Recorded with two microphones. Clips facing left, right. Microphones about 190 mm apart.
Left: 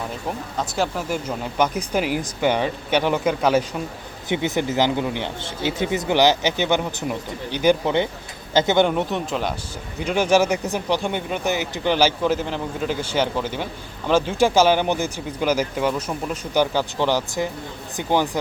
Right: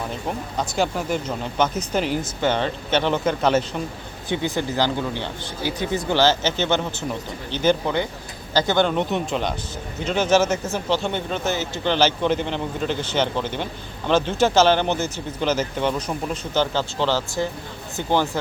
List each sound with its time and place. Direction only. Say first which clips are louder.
0.5 s speech: right 1 dB; centre (ahead or behind); by 9.0 s 20° left (ahead or behind)
9.0 s speech: right 1 dB; centre (ahead or behind)
10.0 s speech: left 1 dB; 10° left (ahead or behind)